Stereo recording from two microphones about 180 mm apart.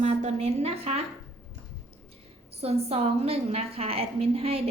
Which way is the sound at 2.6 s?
35° right (ahead or behind).